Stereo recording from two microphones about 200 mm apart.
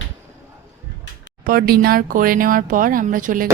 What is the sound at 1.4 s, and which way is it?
Speech, 50° right (ahead or behind).